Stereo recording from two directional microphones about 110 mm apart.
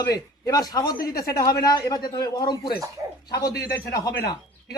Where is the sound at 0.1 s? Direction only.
35° left (ahead or behind).